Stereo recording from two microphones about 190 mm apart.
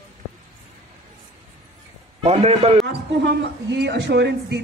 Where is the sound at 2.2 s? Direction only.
35° right (ahead or behind).